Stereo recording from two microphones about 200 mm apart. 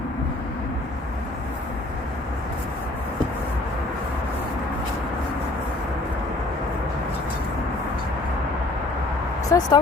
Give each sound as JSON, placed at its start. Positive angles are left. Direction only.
{"t": 9.5, "sound": "speech", "side_deg": 15}